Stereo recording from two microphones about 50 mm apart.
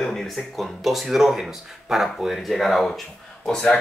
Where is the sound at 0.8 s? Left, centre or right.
Centre.